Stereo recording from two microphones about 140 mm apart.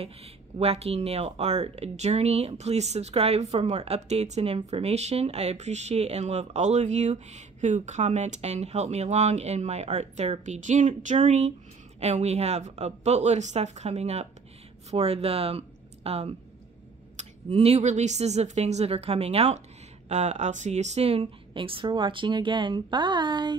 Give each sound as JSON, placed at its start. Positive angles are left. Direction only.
{"t": 0.0, "sound": "speech", "side_deg": -45}